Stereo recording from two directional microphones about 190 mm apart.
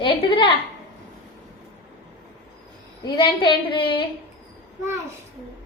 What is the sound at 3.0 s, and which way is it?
A woman's voice, 25° left (ahead or behind).